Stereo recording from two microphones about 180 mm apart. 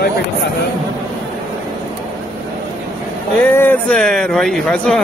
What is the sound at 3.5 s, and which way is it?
Speech, 10° left (ahead or behind).